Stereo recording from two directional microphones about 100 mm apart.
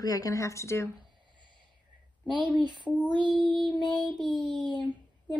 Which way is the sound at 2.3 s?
50° right (ahead or behind).